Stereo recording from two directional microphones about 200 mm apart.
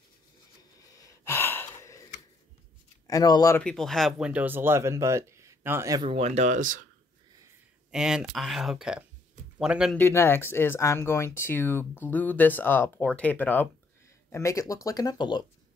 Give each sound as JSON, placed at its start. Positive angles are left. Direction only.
{"t": 0.9, "sound": "gasp", "side_deg": 15}
{"t": 3.1, "sound": "speech", "side_deg": 20}
{"t": 3.6, "sound": "speech", "side_deg": 0}
{"t": 7.9, "sound": "speech", "side_deg": -5}
{"t": 9.9, "sound": "speech", "side_deg": 10}